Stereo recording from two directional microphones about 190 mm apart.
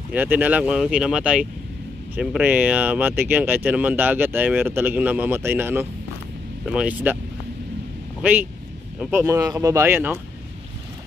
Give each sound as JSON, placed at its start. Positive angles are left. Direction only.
{"t": 0.1, "sound": "speech", "side_deg": -10}
{"t": 8.2, "sound": "speech", "side_deg": -10}